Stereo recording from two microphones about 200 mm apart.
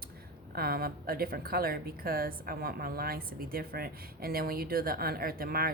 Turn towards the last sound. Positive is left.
turn(degrees=-50)  # may be behind; listen again after turning